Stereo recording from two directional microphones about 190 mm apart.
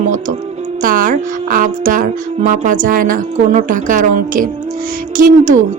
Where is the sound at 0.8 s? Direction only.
45° right (ahead or behind).